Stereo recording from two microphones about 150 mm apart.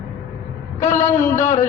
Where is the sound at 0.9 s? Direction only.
15° left (ahead or behind).